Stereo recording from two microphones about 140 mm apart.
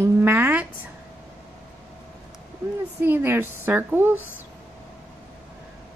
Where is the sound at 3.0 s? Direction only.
15° right (ahead or behind).